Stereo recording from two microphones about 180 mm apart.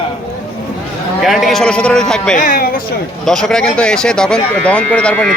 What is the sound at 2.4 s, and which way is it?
Speech, 50° left (ahead or behind).